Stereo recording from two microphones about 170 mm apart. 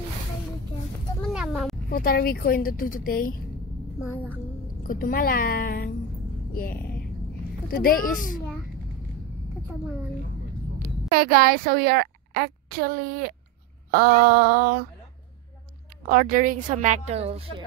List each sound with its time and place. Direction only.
1.3 s a sound: 5° right (ahead or behind)
1.9 s a woman's voice: 60° left (ahead or behind)
4.8 s a woman's voice: 55° left (ahead or behind)
11.1 s a woman's voice: 60° right (ahead or behind)
13.8 s a sound: 65° right (ahead or behind)
16.1 s a woman's voice: 55° right (ahead or behind); by 17.6 s 35° right (ahead or behind)